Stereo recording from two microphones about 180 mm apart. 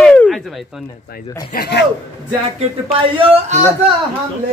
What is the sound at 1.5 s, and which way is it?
Speech, 60° left (ahead or behind).